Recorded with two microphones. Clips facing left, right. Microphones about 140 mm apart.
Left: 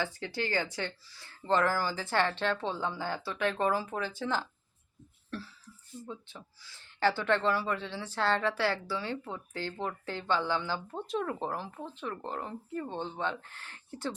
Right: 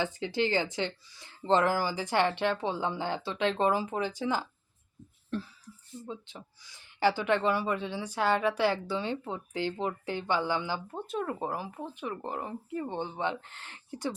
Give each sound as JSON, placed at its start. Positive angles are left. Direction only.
{"t": 0.0, "sound": "speech", "side_deg": -20}
{"t": 6.1, "sound": "speech", "side_deg": -20}